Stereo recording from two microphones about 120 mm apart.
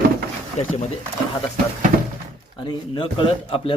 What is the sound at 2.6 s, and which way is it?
A man's voice, 40° left (ahead or behind).